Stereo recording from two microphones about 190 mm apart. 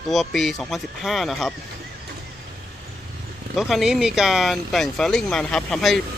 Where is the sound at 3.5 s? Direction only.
Centre (ahead or behind).